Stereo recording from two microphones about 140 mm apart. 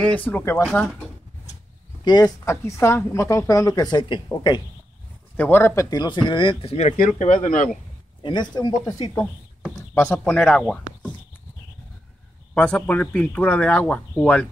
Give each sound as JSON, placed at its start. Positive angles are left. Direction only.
{"t": 0.0, "sound": "speech", "side_deg": 10}
{"t": 2.0, "sound": "speech", "side_deg": 25}
{"t": 5.4, "sound": "speech", "side_deg": 15}
{"t": 6.6, "sound": "speech", "side_deg": 45}
{"t": 7.0, "sound": "speech", "side_deg": 65}
{"t": 8.2, "sound": "speech", "side_deg": 30}
{"t": 9.9, "sound": "speech", "side_deg": 15}
{"t": 12.5, "sound": "speech", "side_deg": 10}